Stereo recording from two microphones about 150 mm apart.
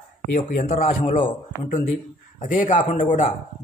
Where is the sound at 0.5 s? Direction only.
60° left (ahead or behind).